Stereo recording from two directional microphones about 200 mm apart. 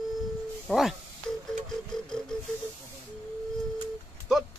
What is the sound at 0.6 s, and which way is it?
Speech, centre (ahead or behind).